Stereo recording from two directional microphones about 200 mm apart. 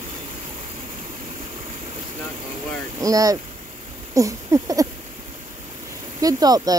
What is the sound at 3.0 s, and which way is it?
Speech, 15° right (ahead or behind).